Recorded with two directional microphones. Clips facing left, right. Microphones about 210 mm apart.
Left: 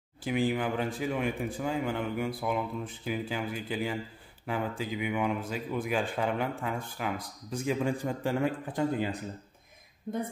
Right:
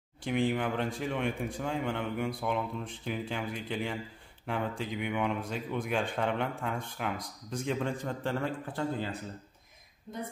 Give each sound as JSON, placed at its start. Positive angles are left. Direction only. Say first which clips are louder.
{"t": 0.2, "sound": "a man's voice", "louder": "left 1 dB", "side_deg": 5}
{"t": 10.1, "sound": "speech", "louder": "left 7 dB", "side_deg": 55}